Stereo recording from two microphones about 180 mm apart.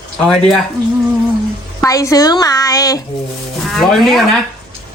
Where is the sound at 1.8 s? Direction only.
15° left (ahead or behind).